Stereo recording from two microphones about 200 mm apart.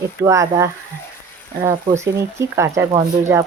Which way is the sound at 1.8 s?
15° right (ahead or behind).